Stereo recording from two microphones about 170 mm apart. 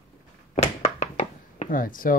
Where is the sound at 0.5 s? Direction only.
40° left (ahead or behind).